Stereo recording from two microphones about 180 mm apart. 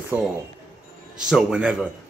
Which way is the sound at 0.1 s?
10° right (ahead or behind).